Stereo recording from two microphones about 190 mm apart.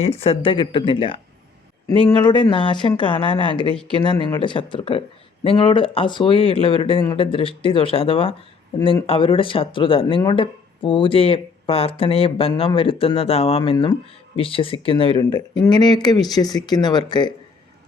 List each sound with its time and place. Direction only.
0.0 s speech: 30° left (ahead or behind)